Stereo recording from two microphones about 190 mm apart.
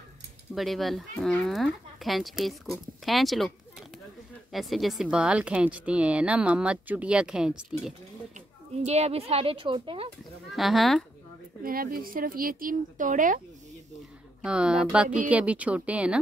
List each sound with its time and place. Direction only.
0.6 s a woman's voice: centre (ahead or behind)
8.7 s speech: 35° right (ahead or behind)
10.5 s a woman's voice: centre (ahead or behind)
11.6 s speech: 50° right (ahead or behind)
14.4 s a woman's voice: 5° right (ahead or behind)